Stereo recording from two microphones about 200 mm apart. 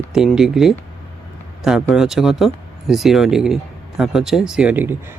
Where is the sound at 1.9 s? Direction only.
Centre (ahead or behind).